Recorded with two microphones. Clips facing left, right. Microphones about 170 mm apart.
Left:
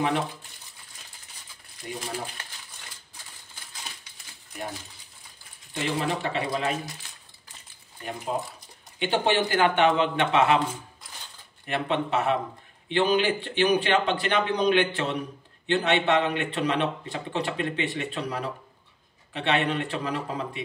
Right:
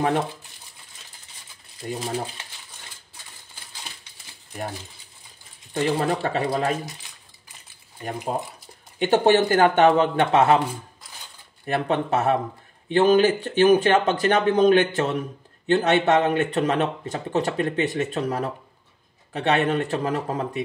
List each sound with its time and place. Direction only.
1.8 s speech: 45° right (ahead or behind)
5.8 s speech: 45° right (ahead or behind)
9.0 s speech: 45° right (ahead or behind)
11.6 s speech: 40° right (ahead or behind)